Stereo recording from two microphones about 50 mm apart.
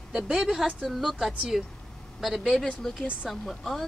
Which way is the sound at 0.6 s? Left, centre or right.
Centre.